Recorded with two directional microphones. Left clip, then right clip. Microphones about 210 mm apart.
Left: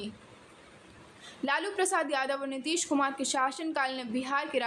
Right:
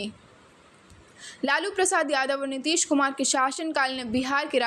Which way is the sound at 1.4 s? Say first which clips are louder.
Right 5 dB; 20° right (ahead or behind).